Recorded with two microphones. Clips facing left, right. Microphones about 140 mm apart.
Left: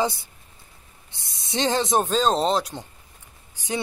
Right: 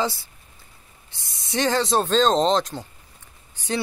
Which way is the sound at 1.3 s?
20° left (ahead or behind).